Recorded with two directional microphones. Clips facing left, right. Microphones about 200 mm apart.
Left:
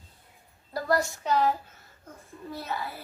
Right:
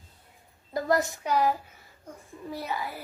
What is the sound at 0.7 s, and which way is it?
Speech, 20° right (ahead or behind).